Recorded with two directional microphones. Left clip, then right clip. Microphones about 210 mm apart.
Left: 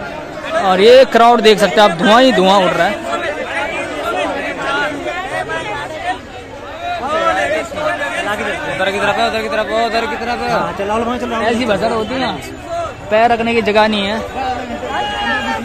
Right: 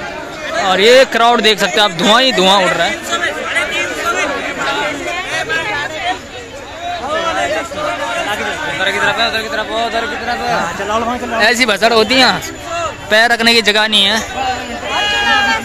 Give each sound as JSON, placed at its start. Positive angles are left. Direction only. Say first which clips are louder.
{"t": 0.7, "sound": "speech", "louder": "left 1 dB", "side_deg": 20}
{"t": 8.3, "sound": "chatter", "louder": "right 1 dB", "side_deg": 45}
{"t": 11.4, "sound": "speech", "louder": "right 5 dB", "side_deg": -15}
{"t": 11.8, "sound": "speech", "louder": "right 7 dB", "side_deg": -40}
{"t": 13.1, "sound": "speech", "louder": "right 2 dB", "side_deg": -5}